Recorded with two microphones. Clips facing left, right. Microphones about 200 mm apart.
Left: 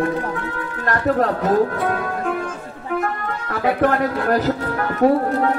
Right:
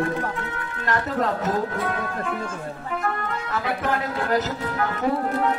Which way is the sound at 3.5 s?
55° left (ahead or behind).